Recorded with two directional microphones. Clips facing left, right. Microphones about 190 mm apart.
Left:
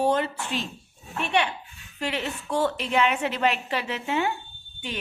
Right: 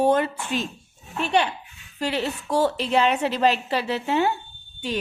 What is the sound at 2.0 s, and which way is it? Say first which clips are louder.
A woman's voice: right 4 dB; 35° right (ahead or behind).